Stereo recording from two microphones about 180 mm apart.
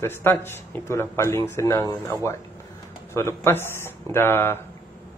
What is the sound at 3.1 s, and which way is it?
Speech, 15° left (ahead or behind).